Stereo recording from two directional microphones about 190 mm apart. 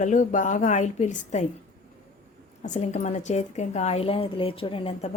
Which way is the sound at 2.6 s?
40° left (ahead or behind).